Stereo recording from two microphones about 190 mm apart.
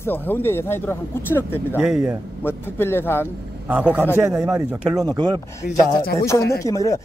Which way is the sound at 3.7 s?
5° right (ahead or behind).